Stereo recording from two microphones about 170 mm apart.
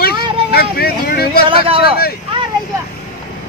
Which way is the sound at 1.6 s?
35° right (ahead or behind).